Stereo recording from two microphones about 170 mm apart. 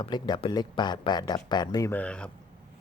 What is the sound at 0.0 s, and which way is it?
Speech, 25° left (ahead or behind).